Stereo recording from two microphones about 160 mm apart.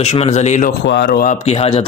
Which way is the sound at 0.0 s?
40° left (ahead or behind).